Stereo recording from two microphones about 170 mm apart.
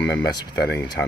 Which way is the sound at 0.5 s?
75° left (ahead or behind).